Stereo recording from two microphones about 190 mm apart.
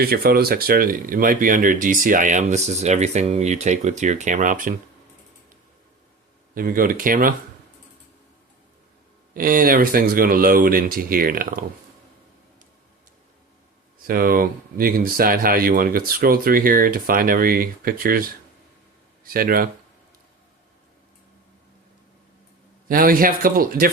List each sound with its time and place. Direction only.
0.0 s speech: 55° right (ahead or behind)
6.5 s speech: 50° right (ahead or behind)
9.3 s speech: 50° right (ahead or behind)
14.1 s speech: 50° right (ahead or behind)
22.9 s speech: 50° right (ahead or behind)